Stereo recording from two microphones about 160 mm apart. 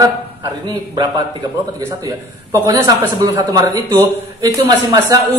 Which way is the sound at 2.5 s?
20° right (ahead or behind).